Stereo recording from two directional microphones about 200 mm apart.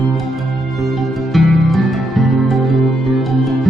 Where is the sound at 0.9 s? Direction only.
Centre (ahead or behind).